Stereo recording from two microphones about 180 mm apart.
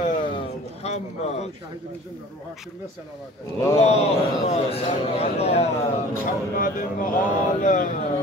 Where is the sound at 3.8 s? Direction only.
35° left (ahead or behind).